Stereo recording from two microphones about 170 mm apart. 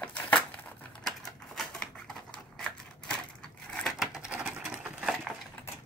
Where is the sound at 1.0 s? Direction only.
Centre (ahead or behind).